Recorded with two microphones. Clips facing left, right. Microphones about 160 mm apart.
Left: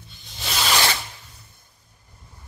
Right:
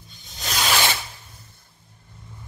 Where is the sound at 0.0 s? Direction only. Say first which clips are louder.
Even; centre (ahead or behind).